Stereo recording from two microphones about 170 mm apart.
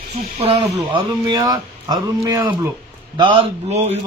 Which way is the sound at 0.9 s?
25° right (ahead or behind).